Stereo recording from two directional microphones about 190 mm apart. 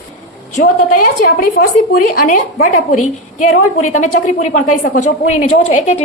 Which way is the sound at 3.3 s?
40° left (ahead or behind).